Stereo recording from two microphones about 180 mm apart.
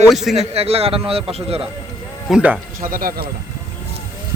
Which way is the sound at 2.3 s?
10° right (ahead or behind).